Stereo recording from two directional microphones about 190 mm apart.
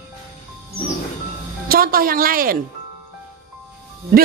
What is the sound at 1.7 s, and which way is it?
Speech, 50° right (ahead or behind).